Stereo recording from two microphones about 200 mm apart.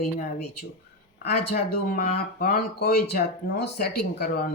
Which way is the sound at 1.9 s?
45° left (ahead or behind).